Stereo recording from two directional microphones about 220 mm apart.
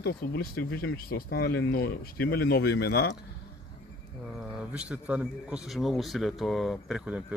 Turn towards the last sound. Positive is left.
turn(degrees=-5)  # may be behind; listen again after turning